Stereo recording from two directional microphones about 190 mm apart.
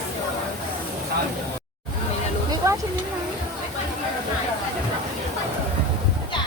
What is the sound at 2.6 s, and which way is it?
Speech, 15° right (ahead or behind).